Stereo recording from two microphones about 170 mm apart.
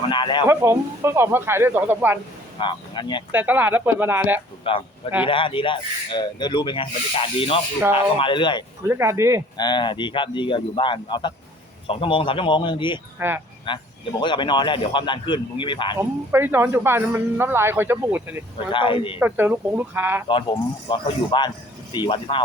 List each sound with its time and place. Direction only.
0.1 s speech: 25° left (ahead or behind)
0.4 s a man's voice: 15° right (ahead or behind)
2.6 s speech: 25° left (ahead or behind)
3.3 s a man's voice: 10° right (ahead or behind)
4.7 s speech: 30° left (ahead or behind)
8.9 s a man's voice: 15° right (ahead or behind)
9.6 s speech: 25° left (ahead or behind)
13.1 s speech: 10° right (ahead or behind)
13.7 s speech: 25° left (ahead or behind)
16.0 s a man's voice: 15° right (ahead or behind)
18.7 s speech: 30° left (ahead or behind)
19.2 s a man's voice: 10° right (ahead or behind)
20.2 s speech: 30° left (ahead or behind)